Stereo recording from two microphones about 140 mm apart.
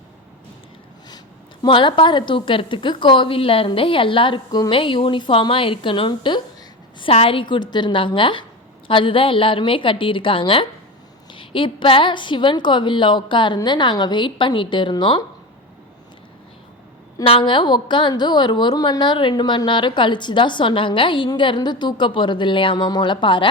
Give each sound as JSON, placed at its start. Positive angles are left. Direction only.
{"t": 1.6, "sound": "a woman's voice", "side_deg": 35}
{"t": 7.5, "sound": "a woman's voice", "side_deg": 30}
{"t": 17.2, "sound": "a woman's voice", "side_deg": 40}